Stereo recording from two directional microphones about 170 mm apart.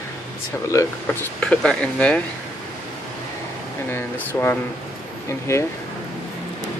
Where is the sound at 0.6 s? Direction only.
15° left (ahead or behind).